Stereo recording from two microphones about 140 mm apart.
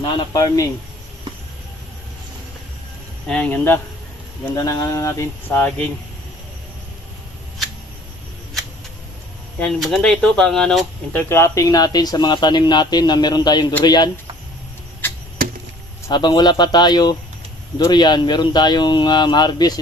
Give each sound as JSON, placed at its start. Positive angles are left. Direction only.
{"t": 0.0, "sound": "speech", "side_deg": 30}
{"t": 3.2, "sound": "speech", "side_deg": 5}
{"t": 4.5, "sound": "speech", "side_deg": 25}
{"t": 9.6, "sound": "speech", "side_deg": 5}
{"t": 11.3, "sound": "speech", "side_deg": 20}
{"t": 16.0, "sound": "speech", "side_deg": 30}